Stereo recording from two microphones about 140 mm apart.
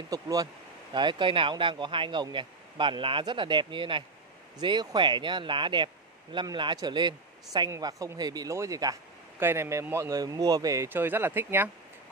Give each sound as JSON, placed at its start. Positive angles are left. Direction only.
{"t": 0.1, "sound": "a man's voice", "side_deg": -25}